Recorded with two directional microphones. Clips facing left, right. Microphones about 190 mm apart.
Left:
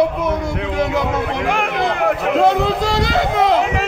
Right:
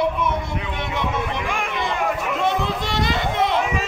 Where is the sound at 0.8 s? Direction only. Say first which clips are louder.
Left 7 dB; 80° left.